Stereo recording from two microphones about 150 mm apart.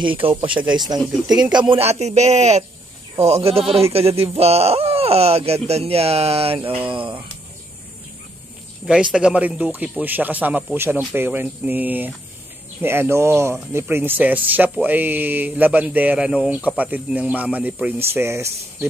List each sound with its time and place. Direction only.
0.0 s speech: 35° right (ahead or behind)
0.9 s speech: 5° right (ahead or behind)
1.5 s speech: 35° right (ahead or behind)
8.8 s speech: 5° right (ahead or behind)